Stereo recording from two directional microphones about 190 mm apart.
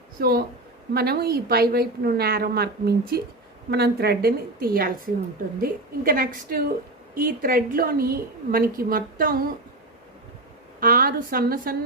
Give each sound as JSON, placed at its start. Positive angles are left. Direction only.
{"t": 0.2, "sound": "a woman's voice", "side_deg": -55}
{"t": 10.8, "sound": "a woman's voice", "side_deg": -50}